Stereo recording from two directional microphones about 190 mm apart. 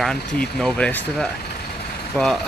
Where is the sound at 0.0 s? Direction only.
Centre (ahead or behind).